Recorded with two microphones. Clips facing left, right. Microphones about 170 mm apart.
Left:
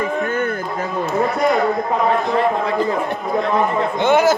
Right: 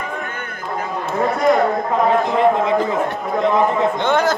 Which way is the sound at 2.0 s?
20° right (ahead or behind).